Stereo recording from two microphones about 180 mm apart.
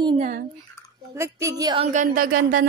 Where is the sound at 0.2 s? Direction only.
45° right (ahead or behind).